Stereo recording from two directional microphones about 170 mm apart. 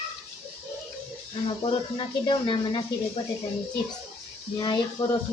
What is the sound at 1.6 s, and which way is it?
Speech, 30° left (ahead or behind).